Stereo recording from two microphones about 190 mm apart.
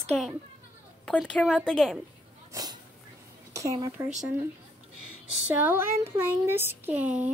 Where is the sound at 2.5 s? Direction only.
20° right (ahead or behind).